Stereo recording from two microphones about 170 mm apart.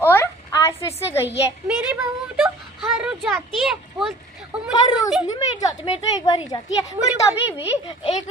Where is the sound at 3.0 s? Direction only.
5° right (ahead or behind).